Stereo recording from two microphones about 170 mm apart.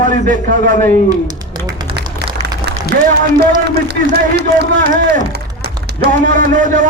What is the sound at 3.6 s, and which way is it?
A man's voice, 80° right.